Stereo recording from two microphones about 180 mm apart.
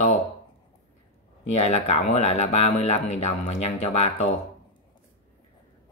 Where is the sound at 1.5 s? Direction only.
40° left (ahead or behind).